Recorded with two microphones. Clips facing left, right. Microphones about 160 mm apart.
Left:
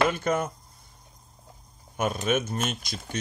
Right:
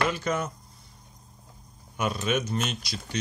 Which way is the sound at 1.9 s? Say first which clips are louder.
Left 2 dB; 50° left (ahead or behind).